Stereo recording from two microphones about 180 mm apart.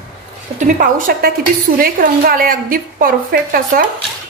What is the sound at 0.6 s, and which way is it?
A woman's voice, 45° right (ahead or behind).